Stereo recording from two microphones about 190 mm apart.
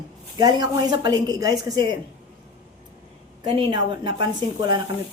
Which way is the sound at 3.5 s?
25° right (ahead or behind).